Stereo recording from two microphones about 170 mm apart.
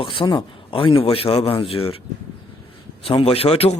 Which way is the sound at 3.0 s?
35° left (ahead or behind).